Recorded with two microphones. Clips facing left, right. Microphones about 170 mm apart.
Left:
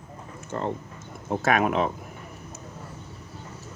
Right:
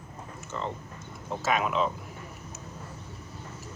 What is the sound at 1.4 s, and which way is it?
Speech, 60° left (ahead or behind).